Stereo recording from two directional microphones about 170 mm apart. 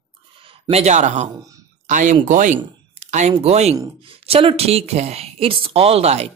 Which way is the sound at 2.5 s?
40° right (ahead or behind).